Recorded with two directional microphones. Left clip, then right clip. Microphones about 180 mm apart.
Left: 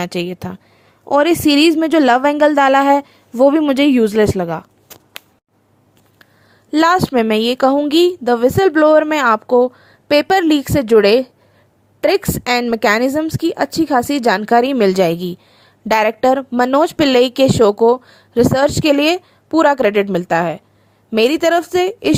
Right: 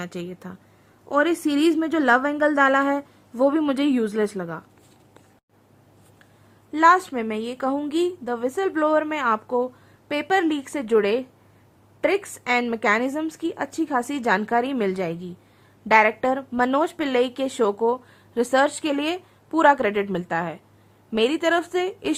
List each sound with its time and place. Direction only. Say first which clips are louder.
0.0 s speech: left 12 dB; 40° left (ahead or behind)
6.7 s speech: left 4 dB; 45° left (ahead or behind)